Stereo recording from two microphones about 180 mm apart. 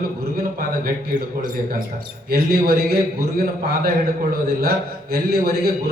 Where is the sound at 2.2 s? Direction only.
55° right (ahead or behind).